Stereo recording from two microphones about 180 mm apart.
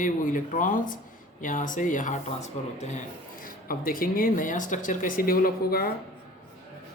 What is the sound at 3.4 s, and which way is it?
Speech, 50° left (ahead or behind).